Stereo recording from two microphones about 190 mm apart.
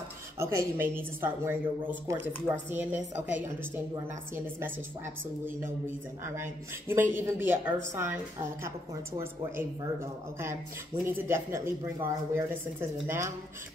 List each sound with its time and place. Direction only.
0.4 s speech: 15° right (ahead or behind)
4.6 s speech: 10° right (ahead or behind)